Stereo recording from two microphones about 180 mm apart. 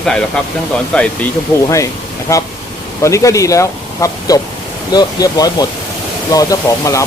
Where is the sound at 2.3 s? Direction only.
20° left (ahead or behind).